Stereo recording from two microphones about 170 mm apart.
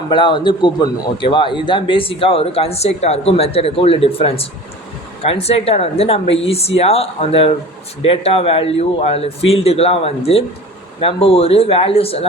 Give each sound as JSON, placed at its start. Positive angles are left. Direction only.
{"t": 0.1, "sound": "a man's voice", "side_deg": 30}